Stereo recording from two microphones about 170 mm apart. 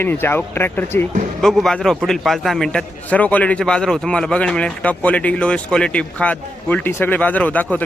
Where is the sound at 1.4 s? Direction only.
Centre (ahead or behind).